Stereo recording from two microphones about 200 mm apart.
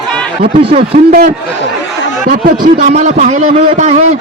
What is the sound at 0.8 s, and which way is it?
A man's voice, 50° right (ahead or behind).